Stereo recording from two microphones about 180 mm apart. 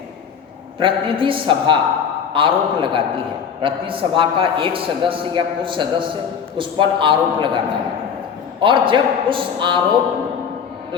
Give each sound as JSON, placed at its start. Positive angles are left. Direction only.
{"t": 0.8, "sound": "a man's voice", "side_deg": -30}
{"t": 8.6, "sound": "a man's voice", "side_deg": -25}